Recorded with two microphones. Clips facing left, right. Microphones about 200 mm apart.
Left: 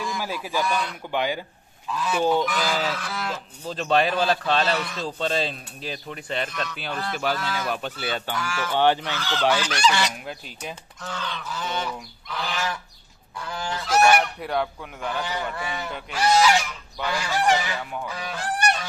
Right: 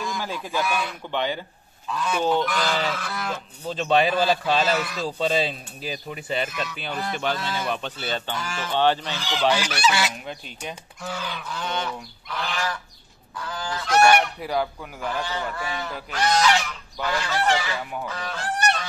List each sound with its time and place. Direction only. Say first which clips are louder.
0.0 s speech: even; 5° left (ahead or behind)
1.1 s speech: left 1 dB; 10° left (ahead or behind)
1.9 s goose: left 1 dB; centre (ahead or behind)
7.5 s speech: even; 5° left (ahead or behind)
8.3 s speech: left 2 dB; 20° right (ahead or behind)
8.7 s speech: left 1 dB; 10° left (ahead or behind)
9.1 s goose: even; 15° right (ahead or behind); by 10.8 s 5° left (ahead or behind)
11.0 s goose: right 1 dB; 10° right (ahead or behind)
11.4 s goose: even; 5° left (ahead or behind)
13.5 s goose: left 1 dB; 25° left (ahead or behind)
13.8 s goose: right 1 dB; 5° left (ahead or behind)
15.9 s speech: left 3 dB; 10° left (ahead or behind)
18.0 s fowl: even; 10° left (ahead or behind)